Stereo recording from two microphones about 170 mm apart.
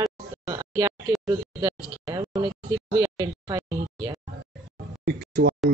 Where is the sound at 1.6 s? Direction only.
20° right (ahead or behind).